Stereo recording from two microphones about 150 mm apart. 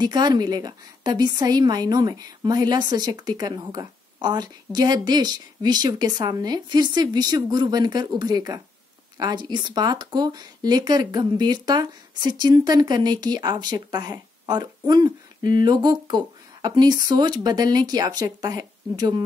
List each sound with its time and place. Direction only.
0.0 s a woman's voice: 30° right (ahead or behind)